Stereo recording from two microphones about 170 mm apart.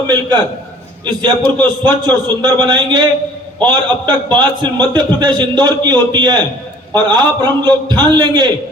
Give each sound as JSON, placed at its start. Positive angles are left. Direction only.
{"t": 1.0, "sound": "a man's voice", "side_deg": -25}